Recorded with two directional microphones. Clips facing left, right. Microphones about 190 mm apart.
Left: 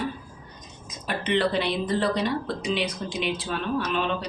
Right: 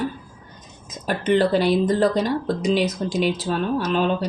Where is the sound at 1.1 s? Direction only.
45° right (ahead or behind).